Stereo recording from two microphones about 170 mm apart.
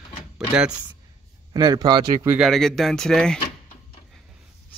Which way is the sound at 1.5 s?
25° right (ahead or behind).